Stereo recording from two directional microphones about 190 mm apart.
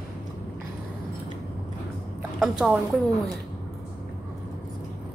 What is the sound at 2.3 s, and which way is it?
Speech, centre (ahead or behind).